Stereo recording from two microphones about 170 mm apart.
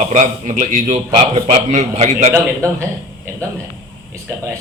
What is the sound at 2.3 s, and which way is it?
Speech, 15° right (ahead or behind).